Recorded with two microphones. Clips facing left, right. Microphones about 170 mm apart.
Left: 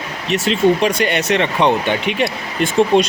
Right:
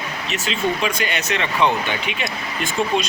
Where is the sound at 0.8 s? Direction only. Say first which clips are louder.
Left 7 dB; 65° left (ahead or behind).